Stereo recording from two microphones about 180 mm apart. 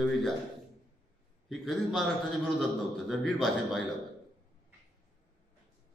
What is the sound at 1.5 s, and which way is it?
A man's voice, centre (ahead or behind).